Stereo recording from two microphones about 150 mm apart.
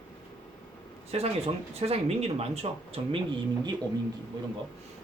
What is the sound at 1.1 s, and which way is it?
Speech, 45° right (ahead or behind).